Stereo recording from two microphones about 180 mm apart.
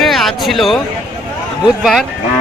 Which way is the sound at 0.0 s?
Centre (ahead or behind).